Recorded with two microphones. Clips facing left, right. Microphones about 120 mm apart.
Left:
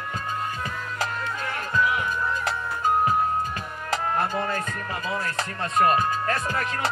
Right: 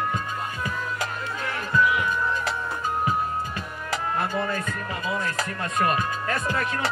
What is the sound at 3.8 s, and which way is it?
Music, 35° left (ahead or behind).